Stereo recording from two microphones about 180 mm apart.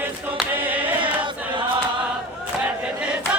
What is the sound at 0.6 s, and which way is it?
Singing, 10° right (ahead or behind).